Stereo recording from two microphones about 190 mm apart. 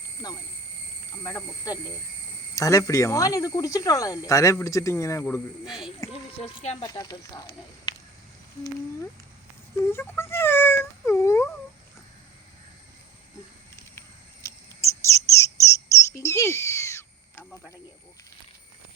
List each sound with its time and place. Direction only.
1.2 s speech: 20° left (ahead or behind)
6.4 s speech: 35° left (ahead or behind)
6.8 s speech: 20° left (ahead or behind)
7.9 s a sound: 25° left (ahead or behind)
9.8 s cat: 10° left (ahead or behind)
14.4 s bird: 15° left (ahead or behind)